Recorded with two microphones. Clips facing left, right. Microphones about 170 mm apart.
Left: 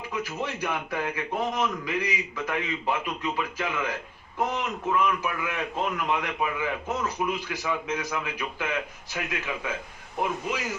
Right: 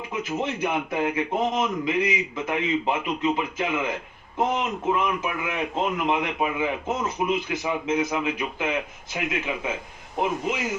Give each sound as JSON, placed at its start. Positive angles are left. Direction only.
{"t": 0.1, "sound": "a man's voice", "side_deg": -20}